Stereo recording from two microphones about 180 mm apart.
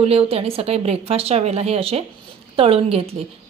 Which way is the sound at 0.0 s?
35° right (ahead or behind).